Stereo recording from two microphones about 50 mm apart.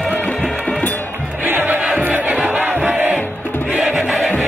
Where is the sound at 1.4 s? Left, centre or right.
Right.